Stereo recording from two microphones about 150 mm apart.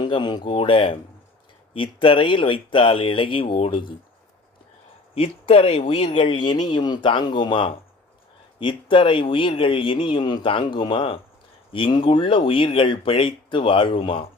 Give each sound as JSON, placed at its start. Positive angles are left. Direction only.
{"t": 0.0, "sound": "a man's voice", "side_deg": 30}
{"t": 5.1, "sound": "a man's voice", "side_deg": 40}